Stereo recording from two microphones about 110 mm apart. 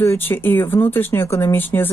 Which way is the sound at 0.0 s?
20° left (ahead or behind).